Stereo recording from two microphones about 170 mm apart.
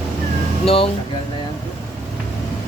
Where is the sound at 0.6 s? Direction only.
35° left (ahead or behind).